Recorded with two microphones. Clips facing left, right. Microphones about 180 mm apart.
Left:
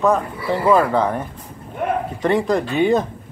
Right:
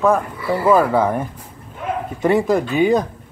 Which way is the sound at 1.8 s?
60° left (ahead or behind).